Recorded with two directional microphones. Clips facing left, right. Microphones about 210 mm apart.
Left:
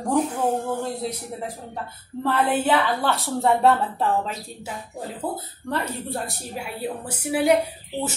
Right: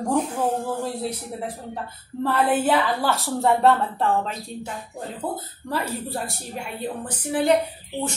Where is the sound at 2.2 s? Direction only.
5° right (ahead or behind).